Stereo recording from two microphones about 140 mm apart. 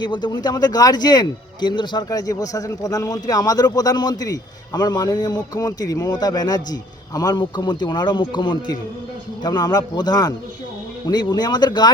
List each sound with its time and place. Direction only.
0.0 s speech: 30° left (ahead or behind)